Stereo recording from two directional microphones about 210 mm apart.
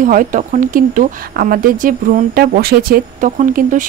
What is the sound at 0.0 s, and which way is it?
Speech, 40° right (ahead or behind).